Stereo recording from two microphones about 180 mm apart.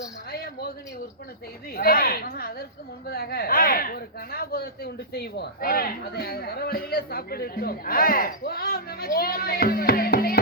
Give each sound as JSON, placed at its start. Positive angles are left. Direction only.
{"t": 0.3, "sound": "a man's voice", "side_deg": 60}
{"t": 1.7, "sound": "speech", "side_deg": 55}